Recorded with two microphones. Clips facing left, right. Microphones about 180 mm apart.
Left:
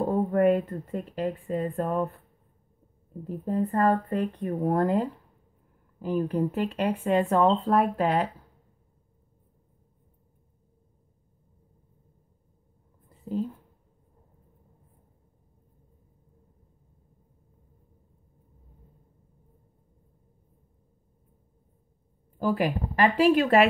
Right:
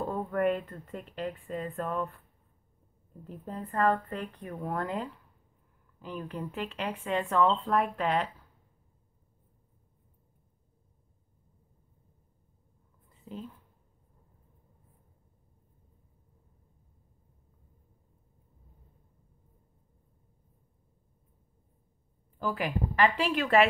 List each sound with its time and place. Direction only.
0.1 s speech: 40° left (ahead or behind)
3.3 s speech: 40° left (ahead or behind)
13.2 s speech: 45° left (ahead or behind)
22.4 s speech: 40° left (ahead or behind)